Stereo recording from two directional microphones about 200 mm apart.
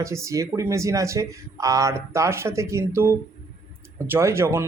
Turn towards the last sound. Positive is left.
turn(degrees=-10)  # may be behind; listen again after turning